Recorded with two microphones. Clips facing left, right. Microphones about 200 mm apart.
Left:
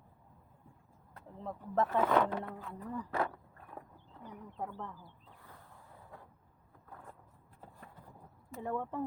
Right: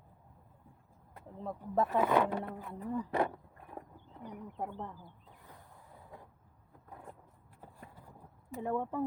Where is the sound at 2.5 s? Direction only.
15° right (ahead or behind).